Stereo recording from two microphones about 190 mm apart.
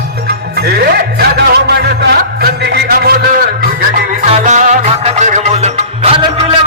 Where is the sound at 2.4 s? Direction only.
55° right (ahead or behind).